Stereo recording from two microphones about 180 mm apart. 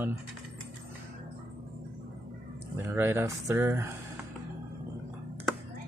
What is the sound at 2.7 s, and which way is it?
Speech, 15° right (ahead or behind).